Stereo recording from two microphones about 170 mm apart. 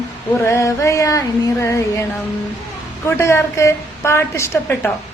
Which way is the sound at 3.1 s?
15° left (ahead or behind).